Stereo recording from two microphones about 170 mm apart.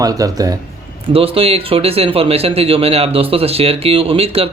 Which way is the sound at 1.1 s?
35° right (ahead or behind).